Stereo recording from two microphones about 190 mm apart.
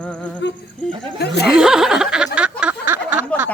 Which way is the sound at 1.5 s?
5° right (ahead or behind).